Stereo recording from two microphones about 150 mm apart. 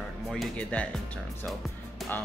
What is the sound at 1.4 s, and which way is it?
Music, centre (ahead or behind).